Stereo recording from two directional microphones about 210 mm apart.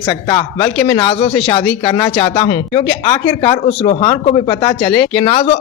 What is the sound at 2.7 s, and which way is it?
Speech, 10° left (ahead or behind).